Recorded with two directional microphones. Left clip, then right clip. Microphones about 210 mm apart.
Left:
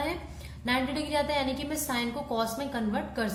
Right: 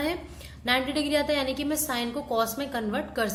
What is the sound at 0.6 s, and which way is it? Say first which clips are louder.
A woman's voice: right 4 dB; 25° right (ahead or behind).